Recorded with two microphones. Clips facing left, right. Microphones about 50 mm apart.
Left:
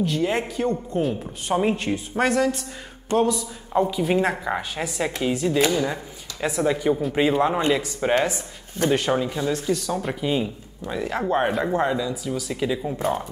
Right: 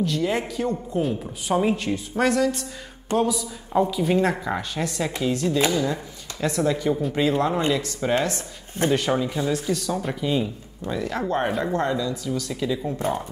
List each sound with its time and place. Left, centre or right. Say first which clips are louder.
0.0 s a woman's voice: left 1 dB; centre
3.2 s a woman's voice: left 2 dB; centre
8.9 s a woman's voice: left 1 dB; centre
9.2 s speech: even; centre
9.5 s speech: left 1 dB; centre